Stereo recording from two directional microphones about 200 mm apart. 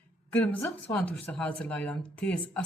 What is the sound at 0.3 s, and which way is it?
Speech, 10° left (ahead or behind).